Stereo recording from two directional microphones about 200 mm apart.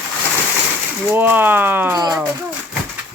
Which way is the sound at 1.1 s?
10° right (ahead or behind).